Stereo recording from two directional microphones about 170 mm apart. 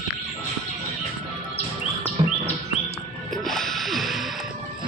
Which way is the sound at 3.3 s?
Centre (ahead or behind).